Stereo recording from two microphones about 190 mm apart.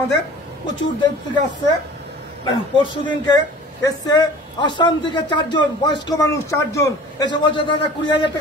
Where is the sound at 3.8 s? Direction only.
20° left (ahead or behind).